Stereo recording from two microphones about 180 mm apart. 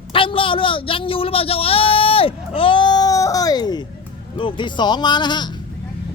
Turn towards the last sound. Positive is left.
turn(degrees=25)  # may be behind; listen again after turning